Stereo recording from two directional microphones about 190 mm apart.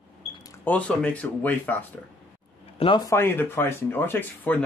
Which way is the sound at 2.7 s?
30° left (ahead or behind).